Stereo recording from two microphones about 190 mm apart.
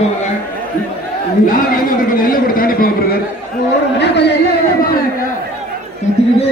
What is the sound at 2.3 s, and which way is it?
Speech, 50° left (ahead or behind).